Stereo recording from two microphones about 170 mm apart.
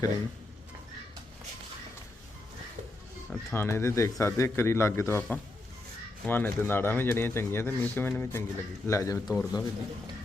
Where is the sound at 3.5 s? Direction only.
15° left (ahead or behind).